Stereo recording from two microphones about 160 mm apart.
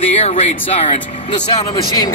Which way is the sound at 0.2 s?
40° left (ahead or behind).